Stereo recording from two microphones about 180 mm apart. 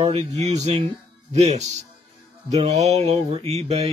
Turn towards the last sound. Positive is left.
turn(degrees=-35)  # may be behind; listen again after turning